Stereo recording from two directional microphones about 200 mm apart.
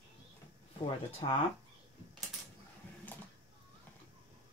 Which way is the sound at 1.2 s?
30° left (ahead or behind).